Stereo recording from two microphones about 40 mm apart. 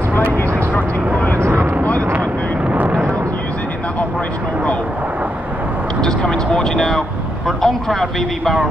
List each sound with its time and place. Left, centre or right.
2.7 s a sound: right
6.0 s vehicle: centre
7.4 s speech: centre